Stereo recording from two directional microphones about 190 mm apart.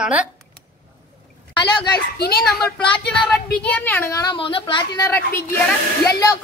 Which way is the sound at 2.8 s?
5° left (ahead or behind).